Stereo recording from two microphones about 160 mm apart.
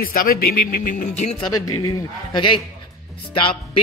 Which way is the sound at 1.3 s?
25° left (ahead or behind).